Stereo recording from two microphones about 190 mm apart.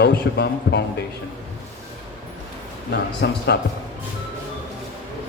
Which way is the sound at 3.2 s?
65° left (ahead or behind).